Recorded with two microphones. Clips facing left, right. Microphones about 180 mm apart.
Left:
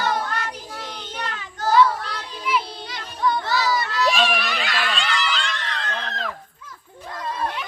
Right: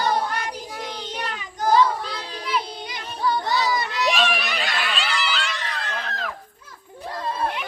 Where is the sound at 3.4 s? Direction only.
15° right (ahead or behind).